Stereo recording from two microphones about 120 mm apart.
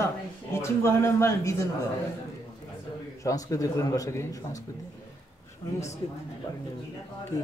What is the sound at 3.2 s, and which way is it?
A man's voice, 30° left (ahead or behind).